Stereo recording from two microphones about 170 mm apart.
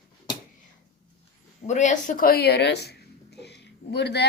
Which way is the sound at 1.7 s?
45° left (ahead or behind).